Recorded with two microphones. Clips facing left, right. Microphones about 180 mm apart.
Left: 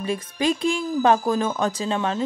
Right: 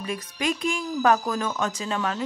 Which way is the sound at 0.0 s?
30° left (ahead or behind).